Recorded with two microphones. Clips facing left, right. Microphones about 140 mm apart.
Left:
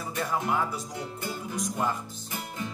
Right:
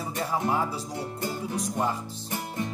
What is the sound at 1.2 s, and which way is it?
Music, 30° right (ahead or behind).